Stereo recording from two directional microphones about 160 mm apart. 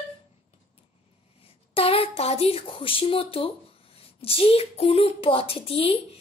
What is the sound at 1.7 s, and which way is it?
Speech, 35° left (ahead or behind).